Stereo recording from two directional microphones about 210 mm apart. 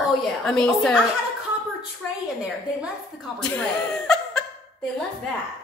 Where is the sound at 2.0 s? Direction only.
5° left (ahead or behind).